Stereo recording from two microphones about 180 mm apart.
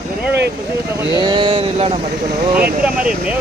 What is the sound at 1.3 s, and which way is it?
Speech, 30° right (ahead or behind).